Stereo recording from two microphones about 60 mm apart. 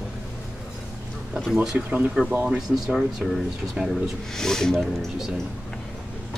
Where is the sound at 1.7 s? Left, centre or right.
Centre.